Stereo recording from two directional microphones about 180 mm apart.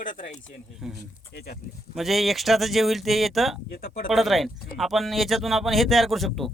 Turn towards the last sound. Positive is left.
turn(degrees=0)  # may be behind; listen again after turning